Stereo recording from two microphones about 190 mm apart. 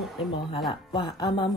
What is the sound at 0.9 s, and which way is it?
Speech, 25° left (ahead or behind).